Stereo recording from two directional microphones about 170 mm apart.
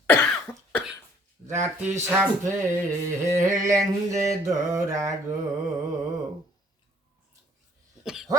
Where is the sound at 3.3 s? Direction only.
20° right (ahead or behind).